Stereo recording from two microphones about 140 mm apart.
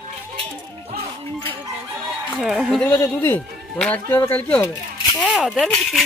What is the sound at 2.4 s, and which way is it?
Speech, centre (ahead or behind).